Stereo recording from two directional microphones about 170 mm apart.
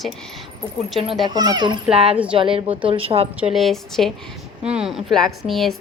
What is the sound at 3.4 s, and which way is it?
Speech, centre (ahead or behind).